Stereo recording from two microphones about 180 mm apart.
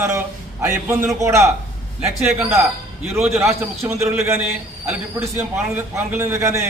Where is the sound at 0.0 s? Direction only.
15° right (ahead or behind).